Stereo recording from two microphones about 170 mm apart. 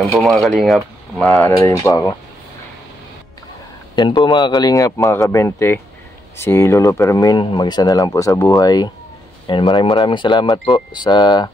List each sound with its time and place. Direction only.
0.1 s speech: centre (ahead or behind)
1.5 s speech: 20° left (ahead or behind)
3.9 s speech: 25° left (ahead or behind)